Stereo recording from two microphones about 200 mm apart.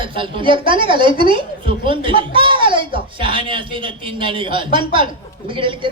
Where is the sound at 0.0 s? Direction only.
25° right (ahead or behind).